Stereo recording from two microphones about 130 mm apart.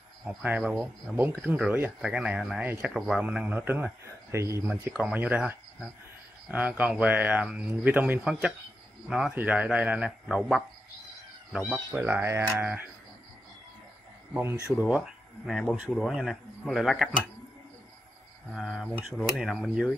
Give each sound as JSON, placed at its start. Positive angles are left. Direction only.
{"t": 0.2, "sound": "speech", "side_deg": -10}
{"t": 4.8, "sound": "speech", "side_deg": -10}
{"t": 12.0, "sound": "speech", "side_deg": -20}
{"t": 14.3, "sound": "speech", "side_deg": -15}
{"t": 14.9, "sound": "speech", "side_deg": -5}
{"t": 18.5, "sound": "speech", "side_deg": 0}